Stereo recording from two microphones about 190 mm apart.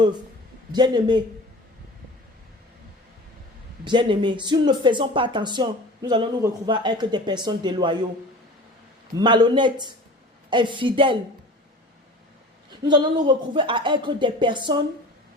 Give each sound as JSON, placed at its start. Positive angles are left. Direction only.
{"t": 0.7, "sound": "speech", "side_deg": -25}
{"t": 3.8, "sound": "speech", "side_deg": -25}
{"t": 9.1, "sound": "speech", "side_deg": -25}
{"t": 12.8, "sound": "speech", "side_deg": -25}